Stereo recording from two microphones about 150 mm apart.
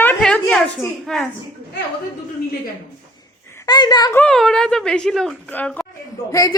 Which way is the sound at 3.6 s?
25° left (ahead or behind).